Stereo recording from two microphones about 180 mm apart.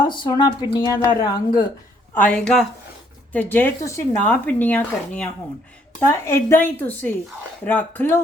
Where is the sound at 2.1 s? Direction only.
10° left (ahead or behind).